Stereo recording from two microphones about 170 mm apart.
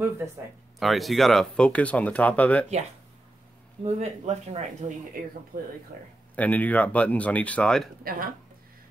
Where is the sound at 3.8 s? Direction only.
40° right (ahead or behind).